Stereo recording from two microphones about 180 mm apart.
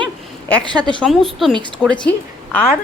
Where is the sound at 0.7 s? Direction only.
25° right (ahead or behind).